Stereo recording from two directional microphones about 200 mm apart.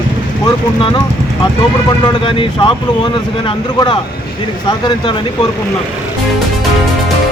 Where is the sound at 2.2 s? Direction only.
25° left (ahead or behind).